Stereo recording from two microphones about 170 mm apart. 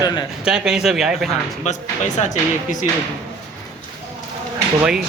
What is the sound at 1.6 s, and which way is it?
Speech, 45° left (ahead or behind).